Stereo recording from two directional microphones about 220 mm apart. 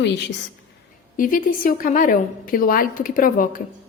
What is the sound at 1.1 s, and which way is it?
A woman's voice, 40° left (ahead or behind).